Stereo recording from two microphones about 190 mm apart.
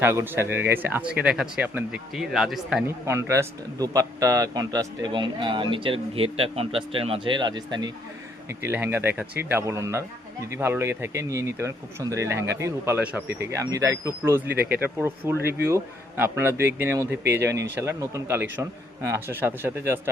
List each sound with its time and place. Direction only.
0.0 s a man's voice: 15° right (ahead or behind)
2.8 s speech: 15° right (ahead or behind)
8.4 s a man's voice: 10° right (ahead or behind)
15.4 s speech: 55° right (ahead or behind)
15.6 s a man's voice: 10° right (ahead or behind)